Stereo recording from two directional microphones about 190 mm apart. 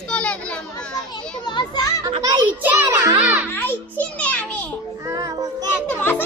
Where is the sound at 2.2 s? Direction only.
15° right (ahead or behind).